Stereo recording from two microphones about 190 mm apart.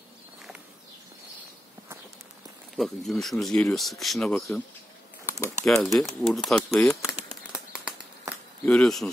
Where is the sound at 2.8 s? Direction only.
Centre (ahead or behind).